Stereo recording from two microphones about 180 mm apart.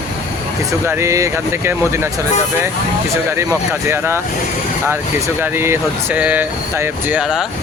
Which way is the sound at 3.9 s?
15° right (ahead or behind).